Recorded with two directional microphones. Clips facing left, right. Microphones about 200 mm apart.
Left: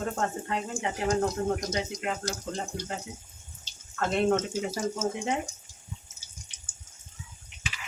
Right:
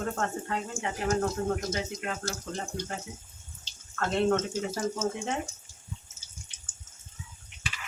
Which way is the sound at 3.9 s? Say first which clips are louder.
Left 1 dB; 15° left (ahead or behind).